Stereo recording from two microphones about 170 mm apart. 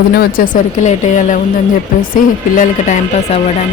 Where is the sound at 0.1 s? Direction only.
60° left (ahead or behind).